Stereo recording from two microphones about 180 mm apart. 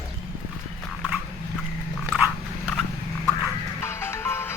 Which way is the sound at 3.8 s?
15° left (ahead or behind).